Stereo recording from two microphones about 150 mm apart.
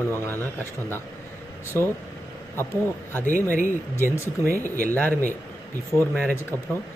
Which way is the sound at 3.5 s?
60° left (ahead or behind).